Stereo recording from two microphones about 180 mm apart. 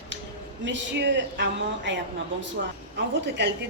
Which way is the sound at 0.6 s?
85° right.